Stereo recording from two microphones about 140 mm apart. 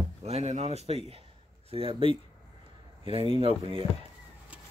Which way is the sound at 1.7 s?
40° right (ahead or behind).